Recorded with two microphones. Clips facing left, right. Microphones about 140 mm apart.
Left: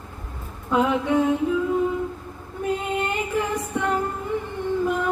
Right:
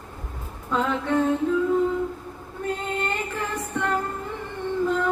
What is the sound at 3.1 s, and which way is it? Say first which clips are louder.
Female singing: left 4 dB; 10° left (ahead or behind).